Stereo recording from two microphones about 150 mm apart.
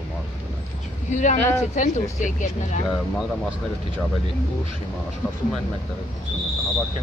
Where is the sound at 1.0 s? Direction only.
55° left (ahead or behind).